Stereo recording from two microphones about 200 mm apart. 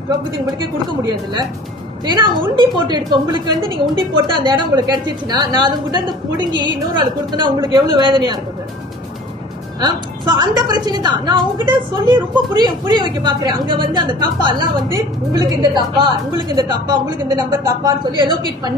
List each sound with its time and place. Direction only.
2.0 s a woman's voice: 25° right (ahead or behind)
9.8 s a woman's voice: 20° right (ahead or behind)